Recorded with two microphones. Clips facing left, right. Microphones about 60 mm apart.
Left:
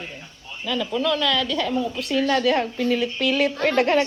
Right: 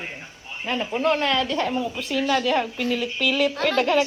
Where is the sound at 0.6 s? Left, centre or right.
Right.